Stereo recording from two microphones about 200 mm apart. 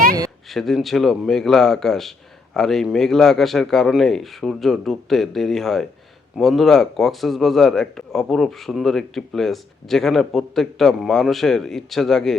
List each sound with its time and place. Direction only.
0.5 s a man's voice: centre (ahead or behind)